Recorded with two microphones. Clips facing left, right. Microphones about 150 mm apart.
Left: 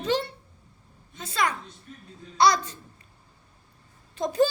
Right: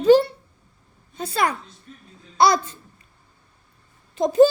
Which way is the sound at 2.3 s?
25° right (ahead or behind).